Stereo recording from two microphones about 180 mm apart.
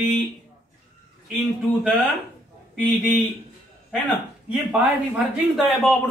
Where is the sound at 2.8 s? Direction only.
10° left (ahead or behind).